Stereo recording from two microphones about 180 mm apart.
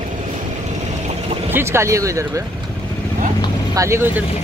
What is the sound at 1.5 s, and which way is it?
Speech, 15° right (ahead or behind).